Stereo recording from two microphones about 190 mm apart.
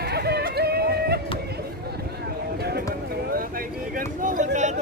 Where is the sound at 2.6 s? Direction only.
55° right (ahead or behind).